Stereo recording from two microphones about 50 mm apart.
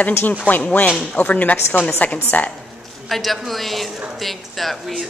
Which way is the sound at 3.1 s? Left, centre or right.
Centre.